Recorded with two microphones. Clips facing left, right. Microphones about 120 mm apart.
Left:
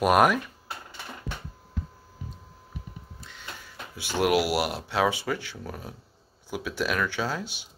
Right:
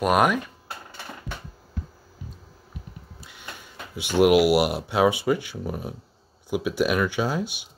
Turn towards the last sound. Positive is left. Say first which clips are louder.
# right 5 dB
turn(degrees=-15)  # may be behind; listen again after turning